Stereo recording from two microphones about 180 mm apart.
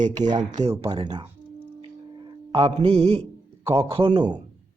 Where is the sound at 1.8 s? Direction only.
30° right (ahead or behind).